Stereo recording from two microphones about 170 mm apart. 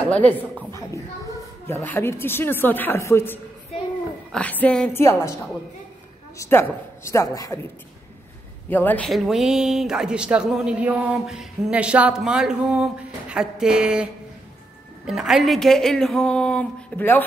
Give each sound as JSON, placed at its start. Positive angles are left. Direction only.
{"t": 0.1, "sound": "a woman's voice", "side_deg": 10}
{"t": 1.7, "sound": "a woman's voice", "side_deg": 15}
{"t": 6.3, "sound": "a woman's voice", "side_deg": 15}
{"t": 8.6, "sound": "speech", "side_deg": 10}